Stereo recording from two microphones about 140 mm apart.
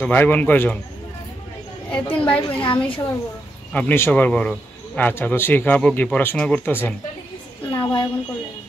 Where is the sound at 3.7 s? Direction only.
15° left (ahead or behind).